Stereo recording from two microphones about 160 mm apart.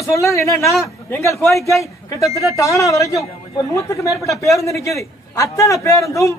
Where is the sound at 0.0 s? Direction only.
20° left (ahead or behind).